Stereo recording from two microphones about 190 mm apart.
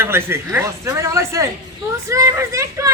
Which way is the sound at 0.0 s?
10° right (ahead or behind).